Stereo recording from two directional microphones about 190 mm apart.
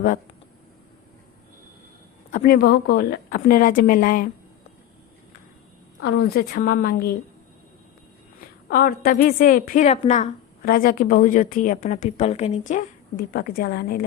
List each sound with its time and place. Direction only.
2.3 s a woman's voice: 45° left (ahead or behind)
2.6 s a woman's voice: 60° left (ahead or behind)
6.0 s a woman's voice: 65° left (ahead or behind)
8.4 s a woman's voice: 50° left (ahead or behind)